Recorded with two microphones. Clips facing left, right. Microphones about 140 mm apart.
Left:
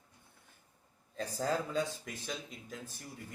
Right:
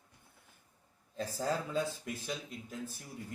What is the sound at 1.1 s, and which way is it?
Speech, 5° right (ahead or behind).